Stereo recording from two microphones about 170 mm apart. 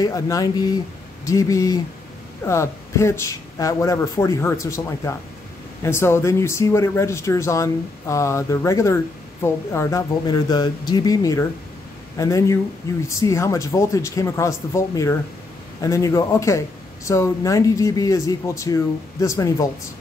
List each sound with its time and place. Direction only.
0.0 s speech: 20° left (ahead or behind)